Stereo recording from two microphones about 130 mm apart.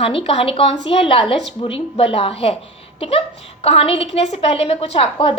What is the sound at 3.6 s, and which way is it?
A woman's voice, 50° left (ahead or behind).